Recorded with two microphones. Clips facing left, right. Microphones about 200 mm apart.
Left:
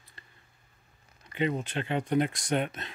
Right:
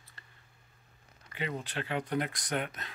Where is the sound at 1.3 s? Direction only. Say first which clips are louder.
Left 7 dB; 20° left (ahead or behind).